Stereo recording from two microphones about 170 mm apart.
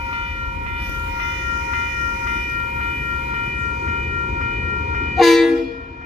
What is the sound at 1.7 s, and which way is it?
Train, 40° right (ahead or behind).